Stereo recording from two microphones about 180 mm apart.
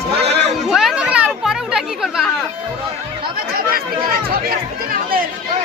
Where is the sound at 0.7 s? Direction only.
Centre (ahead or behind).